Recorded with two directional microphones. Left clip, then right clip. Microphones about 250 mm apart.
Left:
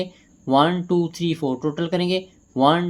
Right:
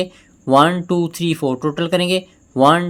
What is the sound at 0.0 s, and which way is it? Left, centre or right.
Speech, right.